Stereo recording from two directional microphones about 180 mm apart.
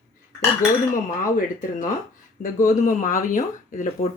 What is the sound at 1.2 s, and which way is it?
Speech, 45° left (ahead or behind).